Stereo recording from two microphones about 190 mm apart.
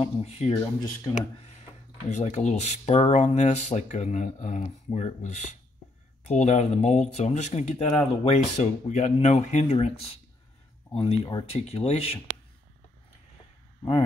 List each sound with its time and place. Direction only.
0.0 s speech: 30° left (ahead or behind)